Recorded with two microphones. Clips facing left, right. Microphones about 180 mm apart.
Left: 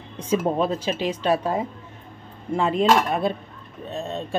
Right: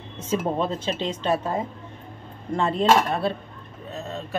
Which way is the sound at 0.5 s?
10° left (ahead or behind).